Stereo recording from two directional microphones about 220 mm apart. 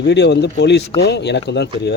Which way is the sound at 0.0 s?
50° left (ahead or behind).